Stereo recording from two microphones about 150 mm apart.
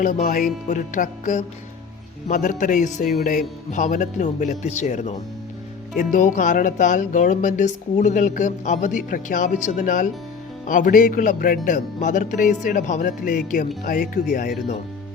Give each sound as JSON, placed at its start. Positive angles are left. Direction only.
{"t": 0.0, "sound": "speech", "side_deg": 65}